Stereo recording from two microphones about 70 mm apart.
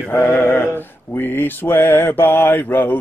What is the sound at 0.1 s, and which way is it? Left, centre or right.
Mantra, left.